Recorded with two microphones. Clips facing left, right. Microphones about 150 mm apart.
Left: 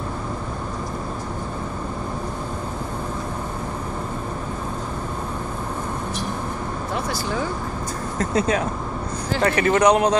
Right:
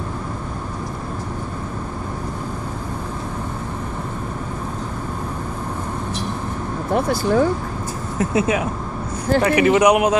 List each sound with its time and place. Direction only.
6.9 s speech: 55° right (ahead or behind)
8.2 s speech: 10° right (ahead or behind)